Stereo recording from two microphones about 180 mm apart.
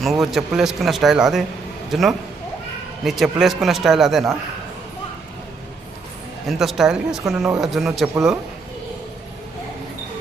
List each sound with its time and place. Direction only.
0.0 s a man's voice: centre (ahead or behind)
6.5 s speech: centre (ahead or behind)